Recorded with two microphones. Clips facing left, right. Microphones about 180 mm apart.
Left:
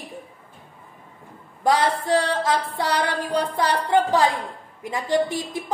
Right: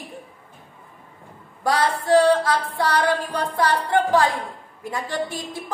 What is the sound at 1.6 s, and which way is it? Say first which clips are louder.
A woman's voice: left 1 dB; 20° left (ahead or behind).